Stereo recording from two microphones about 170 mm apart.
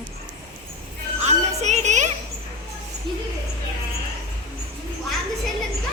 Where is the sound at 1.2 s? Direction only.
40° right (ahead or behind).